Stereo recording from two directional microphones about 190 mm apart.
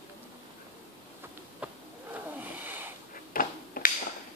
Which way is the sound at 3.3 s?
50° left (ahead or behind).